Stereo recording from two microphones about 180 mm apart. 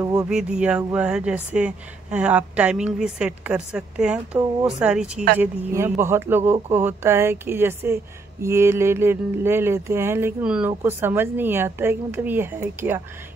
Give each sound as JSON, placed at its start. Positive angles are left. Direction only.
{"t": 0.0, "sound": "speech", "side_deg": -20}
{"t": 0.3, "sound": "a woman's voice", "side_deg": -5}